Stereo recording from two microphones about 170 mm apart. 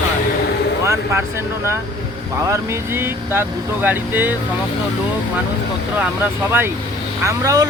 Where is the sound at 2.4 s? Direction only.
15° right (ahead or behind).